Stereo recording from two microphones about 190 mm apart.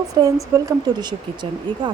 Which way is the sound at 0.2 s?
20° right (ahead or behind).